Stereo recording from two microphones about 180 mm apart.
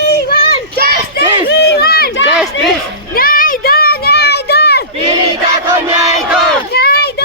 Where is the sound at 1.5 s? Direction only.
65° left (ahead or behind).